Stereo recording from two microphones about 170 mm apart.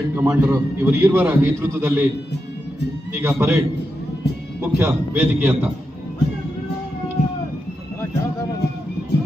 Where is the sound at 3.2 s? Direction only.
15° right (ahead or behind).